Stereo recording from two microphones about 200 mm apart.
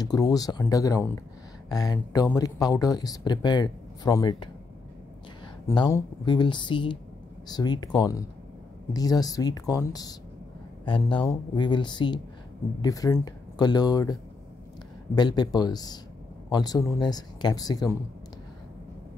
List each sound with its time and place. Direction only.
0.0 s speech: 20° left (ahead or behind)
5.7 s speech: 15° left (ahead or behind)
15.1 s speech: 20° left (ahead or behind)